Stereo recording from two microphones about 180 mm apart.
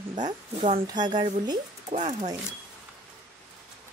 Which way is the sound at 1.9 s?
40° right (ahead or behind).